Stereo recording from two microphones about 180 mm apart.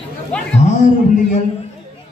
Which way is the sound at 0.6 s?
40° left (ahead or behind).